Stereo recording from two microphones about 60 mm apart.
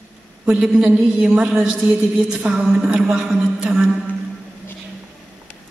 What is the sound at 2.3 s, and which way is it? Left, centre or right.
Speech, right.